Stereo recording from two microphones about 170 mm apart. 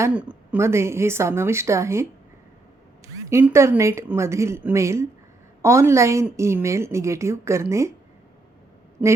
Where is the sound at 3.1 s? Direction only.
15° right (ahead or behind).